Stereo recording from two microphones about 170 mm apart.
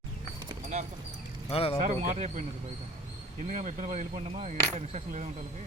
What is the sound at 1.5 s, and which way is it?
Speech, 35° left (ahead or behind).